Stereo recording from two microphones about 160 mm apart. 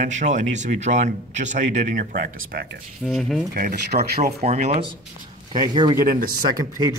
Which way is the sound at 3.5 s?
65° right (ahead or behind).